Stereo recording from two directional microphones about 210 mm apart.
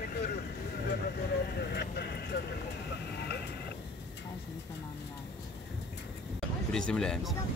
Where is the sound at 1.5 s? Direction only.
50° left (ahead or behind).